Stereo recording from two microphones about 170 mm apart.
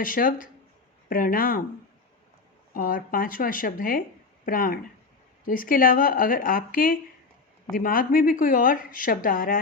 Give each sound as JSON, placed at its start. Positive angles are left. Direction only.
{"t": 0.0, "sound": "a woman's voice", "side_deg": 55}
{"t": 2.7, "sound": "a woman's voice", "side_deg": 55}